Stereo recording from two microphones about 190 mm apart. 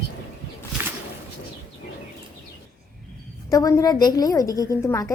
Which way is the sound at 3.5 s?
20° left (ahead or behind).